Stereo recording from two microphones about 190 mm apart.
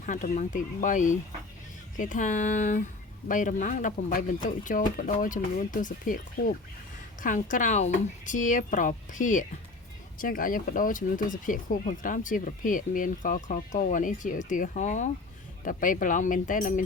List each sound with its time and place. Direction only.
0.0 s speech: 40° left (ahead or behind)